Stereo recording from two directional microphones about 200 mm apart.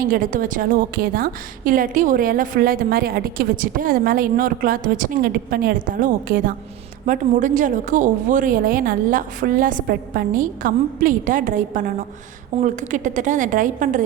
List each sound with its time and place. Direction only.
0.0 s a woman's voice: 45° right (ahead or behind)